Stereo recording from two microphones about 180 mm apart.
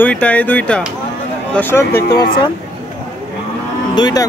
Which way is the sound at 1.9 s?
60° left (ahead or behind).